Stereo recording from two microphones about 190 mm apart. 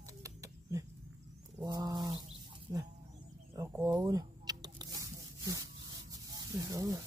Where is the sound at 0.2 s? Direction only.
15° right (ahead or behind).